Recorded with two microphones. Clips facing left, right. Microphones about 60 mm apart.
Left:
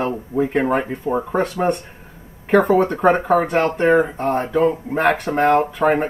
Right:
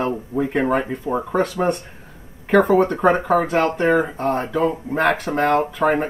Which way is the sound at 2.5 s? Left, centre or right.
Left.